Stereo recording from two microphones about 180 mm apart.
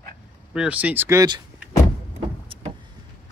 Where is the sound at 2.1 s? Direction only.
30° right (ahead or behind).